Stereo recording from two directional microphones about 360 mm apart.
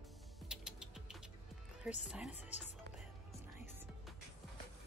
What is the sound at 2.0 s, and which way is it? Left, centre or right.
Speech, centre.